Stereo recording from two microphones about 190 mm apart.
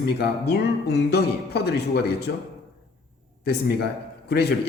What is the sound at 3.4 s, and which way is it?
Speech, 60° left (ahead or behind).